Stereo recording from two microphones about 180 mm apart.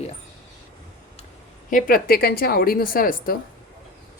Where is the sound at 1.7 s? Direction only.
55° left (ahead or behind).